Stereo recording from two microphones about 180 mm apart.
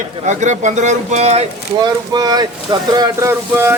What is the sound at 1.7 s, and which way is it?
Speech, 20° right (ahead or behind).